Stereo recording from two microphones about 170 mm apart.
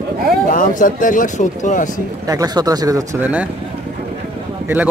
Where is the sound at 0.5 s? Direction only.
55° left (ahead or behind).